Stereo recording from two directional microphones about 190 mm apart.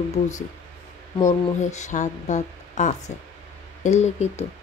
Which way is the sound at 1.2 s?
40° left (ahead or behind).